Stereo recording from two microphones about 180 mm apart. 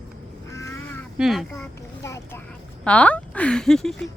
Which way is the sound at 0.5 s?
15° left (ahead or behind).